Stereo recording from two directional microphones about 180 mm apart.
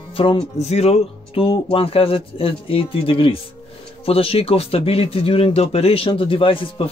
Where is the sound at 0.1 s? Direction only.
30° left (ahead or behind).